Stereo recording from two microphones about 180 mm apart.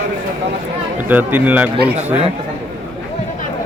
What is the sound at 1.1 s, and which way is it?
Speech, 10° right (ahead or behind).